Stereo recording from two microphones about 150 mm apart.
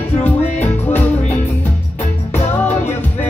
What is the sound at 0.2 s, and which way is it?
Music, 10° left (ahead or behind).